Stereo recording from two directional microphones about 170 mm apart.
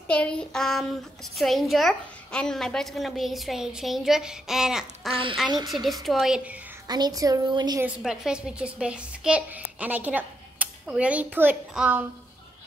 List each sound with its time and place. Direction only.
0.1 s a woman's voice: 5° left (ahead or behind)
6.9 s a woman's voice: 25° right (ahead or behind)
7.8 s a woman's voice: 5° right (ahead or behind)